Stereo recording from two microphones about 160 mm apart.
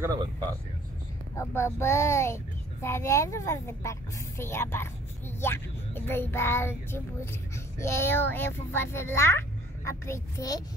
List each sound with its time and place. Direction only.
0.0 s speech: 25° right (ahead or behind)
1.3 s a child's voice: 15° left (ahead or behind)